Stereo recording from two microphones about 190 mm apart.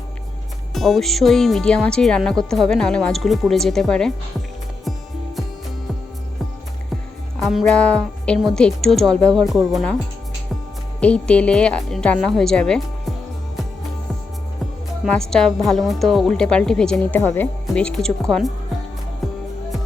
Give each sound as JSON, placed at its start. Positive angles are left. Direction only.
{"t": 0.7, "sound": "a woman's voice", "side_deg": 0}
{"t": 6.9, "sound": "a woman's voice", "side_deg": 0}
{"t": 11.0, "sound": "a woman's voice", "side_deg": 5}
{"t": 15.1, "sound": "a woman's voice", "side_deg": 5}